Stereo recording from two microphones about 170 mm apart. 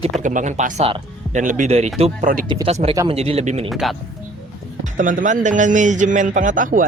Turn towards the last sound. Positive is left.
turn(degrees=-50)  # may be behind; listen again after turning